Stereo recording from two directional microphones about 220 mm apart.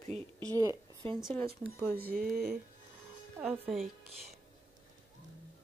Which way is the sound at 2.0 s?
45° right (ahead or behind).